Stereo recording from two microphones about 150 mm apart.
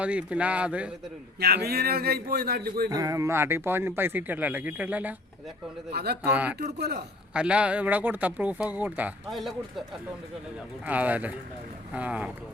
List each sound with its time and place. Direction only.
0.0 s speech: 10° right (ahead or behind)
1.4 s a man's voice: 90° right
2.9 s speech: 25° right (ahead or behind)
5.9 s a man's voice: 90° right
6.2 s speech: 10° right (ahead or behind)
6.6 s a man's voice: 90° right
7.3 s speech: 5° right (ahead or behind)
10.8 s speech: 10° right (ahead or behind)